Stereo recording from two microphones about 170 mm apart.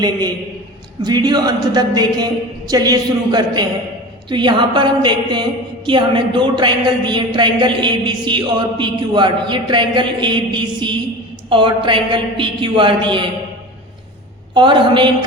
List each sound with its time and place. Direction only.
0.0 s a woman's voice: 25° right (ahead or behind)
14.5 s a woman's voice: 25° right (ahead or behind)